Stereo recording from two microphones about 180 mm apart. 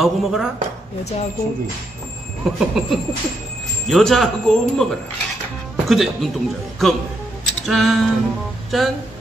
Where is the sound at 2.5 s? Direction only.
Centre (ahead or behind).